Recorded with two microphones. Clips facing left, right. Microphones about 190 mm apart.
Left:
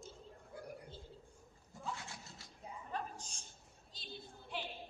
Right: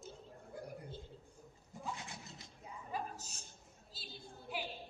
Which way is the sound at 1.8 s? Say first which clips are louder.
Even; 20° right (ahead or behind).